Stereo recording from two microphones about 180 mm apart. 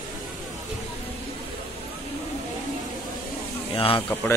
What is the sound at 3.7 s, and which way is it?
Speech, 30° left (ahead or behind).